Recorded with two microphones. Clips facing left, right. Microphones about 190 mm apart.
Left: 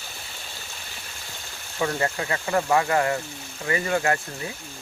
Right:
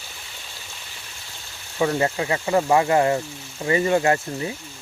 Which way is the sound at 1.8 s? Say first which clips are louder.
Right 4 dB; 20° right (ahead or behind).